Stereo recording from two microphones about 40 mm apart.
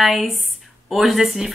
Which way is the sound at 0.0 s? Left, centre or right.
Centre.